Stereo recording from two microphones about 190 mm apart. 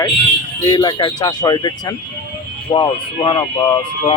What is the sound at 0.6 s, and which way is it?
Speech, 20° left (ahead or behind).